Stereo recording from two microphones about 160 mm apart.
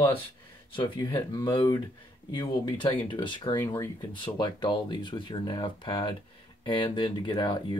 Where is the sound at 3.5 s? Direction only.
15° left (ahead or behind).